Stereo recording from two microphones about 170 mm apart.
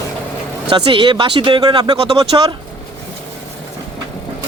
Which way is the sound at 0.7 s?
30° right (ahead or behind).